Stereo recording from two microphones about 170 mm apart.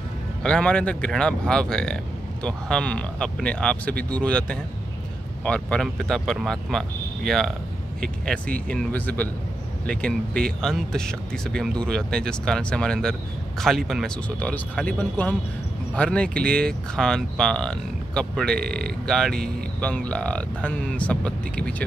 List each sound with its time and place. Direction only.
0.4 s speech: 5° left (ahead or behind)